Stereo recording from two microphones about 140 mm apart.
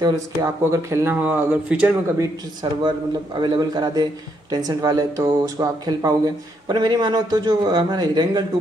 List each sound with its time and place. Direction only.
0.0 s speech: 25° right (ahead or behind)
2.1 s a man's voice: 30° right (ahead or behind)